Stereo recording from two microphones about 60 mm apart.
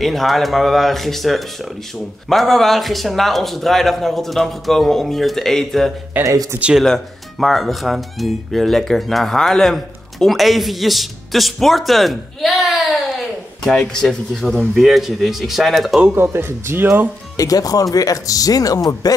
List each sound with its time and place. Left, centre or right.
0.0 s speech: centre
6.2 s speech: right
6.8 s speech: centre
13.7 s speech: centre
16.2 s speech: right
17.4 s speech: left